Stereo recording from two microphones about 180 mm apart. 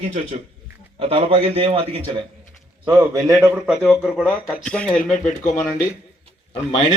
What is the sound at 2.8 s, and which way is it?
Speech, 15° right (ahead or behind).